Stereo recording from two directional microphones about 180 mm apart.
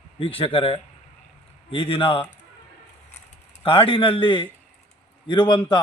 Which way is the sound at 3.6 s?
30° left (ahead or behind).